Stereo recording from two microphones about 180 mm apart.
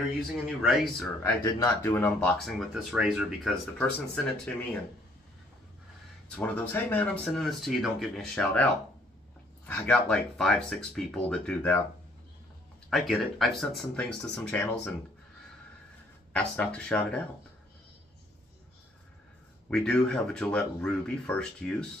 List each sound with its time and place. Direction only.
0.6 s speech: centre (ahead or behind)
1.2 s speech: 15° left (ahead or behind)
6.2 s speech: 5° left (ahead or behind)
9.7 s speech: 5° left (ahead or behind)
12.9 s speech: centre (ahead or behind)
16.3 s speech: 5° left (ahead or behind)
19.7 s speech: 5° left (ahead or behind)